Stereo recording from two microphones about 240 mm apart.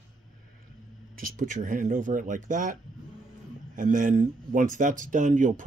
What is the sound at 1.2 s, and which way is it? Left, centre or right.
Speech, right.